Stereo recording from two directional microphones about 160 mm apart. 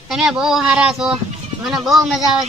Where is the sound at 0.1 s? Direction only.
5° right (ahead or behind).